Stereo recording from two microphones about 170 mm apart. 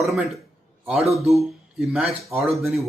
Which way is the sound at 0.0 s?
Centre (ahead or behind).